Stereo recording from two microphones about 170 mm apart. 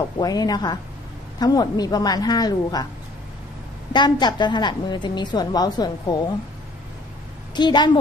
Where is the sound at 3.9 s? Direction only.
25° left (ahead or behind).